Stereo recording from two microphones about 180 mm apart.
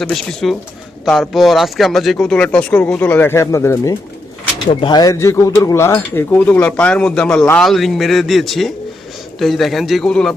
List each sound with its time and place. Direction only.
0.0 s speech: 5° left (ahead or behind)
4.7 s speech: 25° left (ahead or behind); by 10.3 s 5° left (ahead or behind)